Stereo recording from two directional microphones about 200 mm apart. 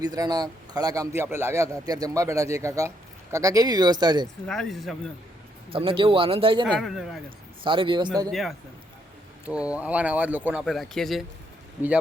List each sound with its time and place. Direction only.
0.0 s a man's voice: 20° right (ahead or behind)
4.4 s speech: centre (ahead or behind)
5.7 s speech: 25° right (ahead or behind)
6.7 s speech: centre (ahead or behind)
7.3 s a man's voice: 25° right (ahead or behind)
8.3 s a man's voice: centre (ahead or behind)